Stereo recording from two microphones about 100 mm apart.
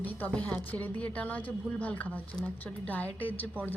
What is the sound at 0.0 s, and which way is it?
A woman's voice, 15° left (ahead or behind).